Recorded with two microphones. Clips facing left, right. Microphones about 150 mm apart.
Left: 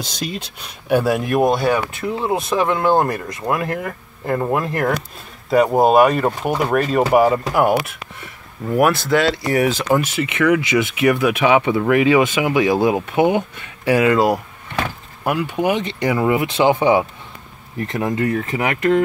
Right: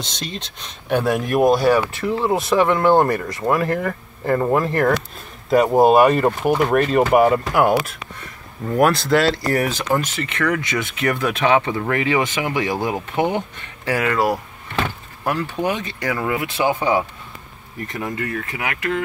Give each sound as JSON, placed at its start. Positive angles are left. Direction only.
{"t": 0.0, "sound": "speech", "side_deg": 5}
{"t": 15.8, "sound": "speech", "side_deg": 20}